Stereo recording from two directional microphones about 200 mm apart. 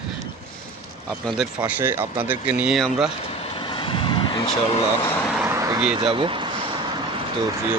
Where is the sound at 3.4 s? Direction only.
25° left (ahead or behind).